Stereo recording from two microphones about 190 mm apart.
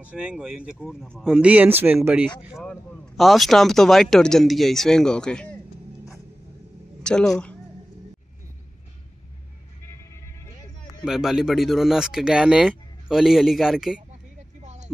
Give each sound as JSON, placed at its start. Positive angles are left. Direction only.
{"t": 0.0, "sound": "speech", "side_deg": -5}
{"t": 7.0, "sound": "a woman's voice", "side_deg": 5}
{"t": 11.1, "sound": "speech", "side_deg": 0}
{"t": 14.6, "sound": "vehicle", "side_deg": -35}